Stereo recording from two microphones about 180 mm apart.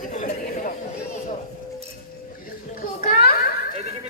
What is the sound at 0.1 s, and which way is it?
Chatter, 40° left (ahead or behind).